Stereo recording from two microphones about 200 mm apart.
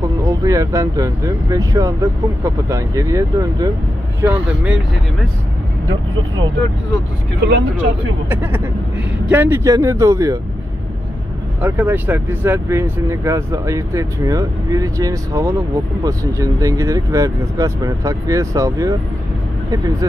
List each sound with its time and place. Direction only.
0.0 s speech: 15° right (ahead or behind)
7.4 s speech: 60° right (ahead or behind)
8.3 s speech: 10° right (ahead or behind)
11.6 s speech: 10° right (ahead or behind)